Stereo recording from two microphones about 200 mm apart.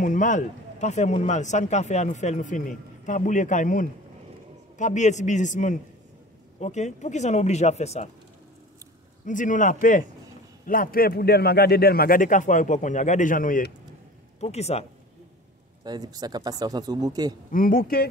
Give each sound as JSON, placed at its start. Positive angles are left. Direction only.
{"t": 0.0, "sound": "speech", "side_deg": 40}
{"t": 9.2, "sound": "a man's voice", "side_deg": 40}
{"t": 14.4, "sound": "speech", "side_deg": 30}
{"t": 15.8, "sound": "speech", "side_deg": -20}
{"t": 17.5, "sound": "a man's voice", "side_deg": 45}